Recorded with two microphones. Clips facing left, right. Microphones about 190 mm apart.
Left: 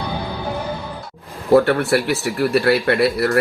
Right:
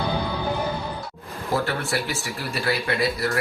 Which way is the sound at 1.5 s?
65° left (ahead or behind).